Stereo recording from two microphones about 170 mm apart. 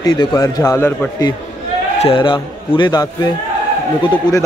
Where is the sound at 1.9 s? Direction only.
35° left (ahead or behind).